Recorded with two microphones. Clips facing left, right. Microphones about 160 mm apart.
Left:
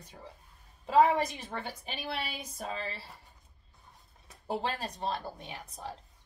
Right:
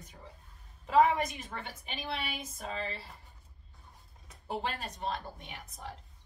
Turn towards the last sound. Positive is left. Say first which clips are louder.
# left 3 dB
turn(degrees=35)  # may be behind; listen again after turning